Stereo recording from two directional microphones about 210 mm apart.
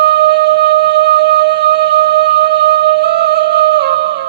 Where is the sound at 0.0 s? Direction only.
55° right (ahead or behind).